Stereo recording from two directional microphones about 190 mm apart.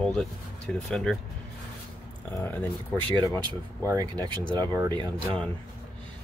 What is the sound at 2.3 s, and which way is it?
Speech, 10° left (ahead or behind).